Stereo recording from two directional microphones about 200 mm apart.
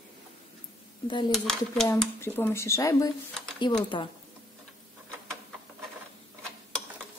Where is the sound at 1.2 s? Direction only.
Centre (ahead or behind).